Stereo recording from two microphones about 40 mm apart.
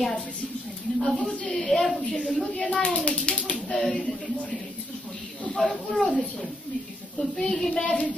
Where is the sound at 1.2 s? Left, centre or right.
Left; by 2.0 s centre.